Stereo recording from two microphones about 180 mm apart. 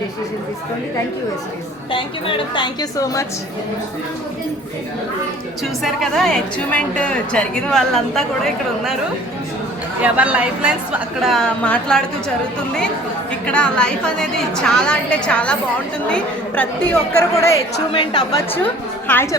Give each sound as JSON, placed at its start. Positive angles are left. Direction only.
{"t": 2.6, "sound": "a woman's voice", "side_deg": 20}
{"t": 5.8, "sound": "a woman's voice", "side_deg": 0}
{"t": 10.0, "sound": "a woman's voice", "side_deg": -10}
{"t": 13.4, "sound": "a woman's voice", "side_deg": 5}
{"t": 17.7, "sound": "a woman's voice", "side_deg": 25}
{"t": 18.5, "sound": "a woman's voice", "side_deg": 10}